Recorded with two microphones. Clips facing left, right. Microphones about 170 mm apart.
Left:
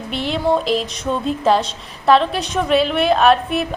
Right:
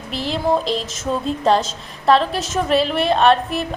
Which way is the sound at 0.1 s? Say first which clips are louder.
Left 1 dB; centre (ahead or behind).